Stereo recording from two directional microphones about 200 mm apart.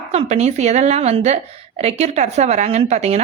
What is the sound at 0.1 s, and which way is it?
A woman's voice, 35° right (ahead or behind).